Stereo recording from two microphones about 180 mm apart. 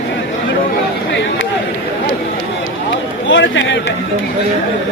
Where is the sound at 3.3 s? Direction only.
90° left.